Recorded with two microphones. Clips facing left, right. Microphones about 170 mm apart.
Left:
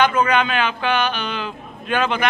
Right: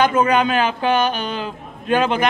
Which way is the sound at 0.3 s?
40° right (ahead or behind).